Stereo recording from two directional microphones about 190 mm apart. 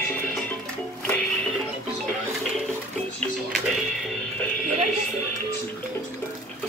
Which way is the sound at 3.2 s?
Centre (ahead or behind).